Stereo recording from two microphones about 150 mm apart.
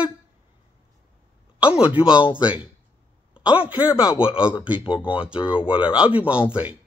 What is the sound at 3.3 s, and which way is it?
Speech, 10° right (ahead or behind).